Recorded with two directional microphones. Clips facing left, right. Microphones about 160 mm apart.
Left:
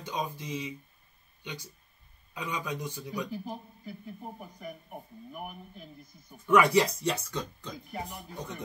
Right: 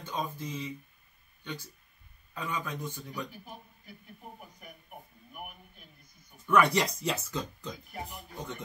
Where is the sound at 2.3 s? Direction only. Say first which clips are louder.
Left 1 dB; 15° left (ahead or behind).